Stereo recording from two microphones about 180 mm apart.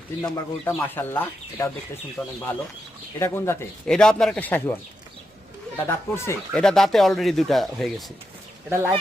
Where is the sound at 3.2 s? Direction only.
15° left (ahead or behind).